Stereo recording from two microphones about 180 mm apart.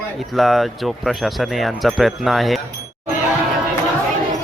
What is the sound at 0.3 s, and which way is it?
Speech, centre (ahead or behind).